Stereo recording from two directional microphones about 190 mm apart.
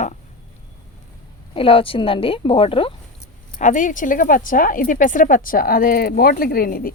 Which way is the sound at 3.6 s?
40° left (ahead or behind).